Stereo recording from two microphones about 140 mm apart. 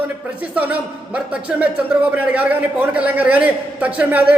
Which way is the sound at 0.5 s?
10° right (ahead or behind).